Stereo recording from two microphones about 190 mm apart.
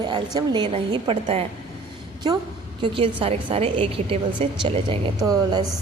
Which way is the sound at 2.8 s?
30° right (ahead or behind).